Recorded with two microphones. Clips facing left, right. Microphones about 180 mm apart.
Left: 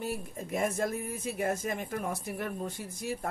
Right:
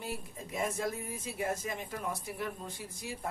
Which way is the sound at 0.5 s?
50° left (ahead or behind).